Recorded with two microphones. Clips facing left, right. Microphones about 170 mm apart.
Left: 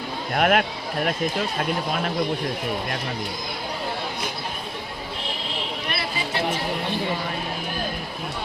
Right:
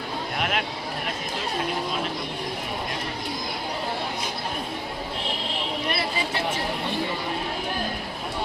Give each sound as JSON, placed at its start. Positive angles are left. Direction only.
{"t": 0.3, "sound": "speech", "side_deg": 55}